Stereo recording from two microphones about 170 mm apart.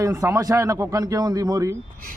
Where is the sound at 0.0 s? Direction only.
20° right (ahead or behind).